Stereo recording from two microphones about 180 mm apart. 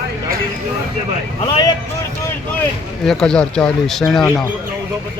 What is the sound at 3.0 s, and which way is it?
Speech, 5° left (ahead or behind).